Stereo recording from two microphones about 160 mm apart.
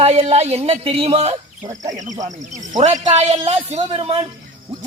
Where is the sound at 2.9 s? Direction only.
45° right (ahead or behind).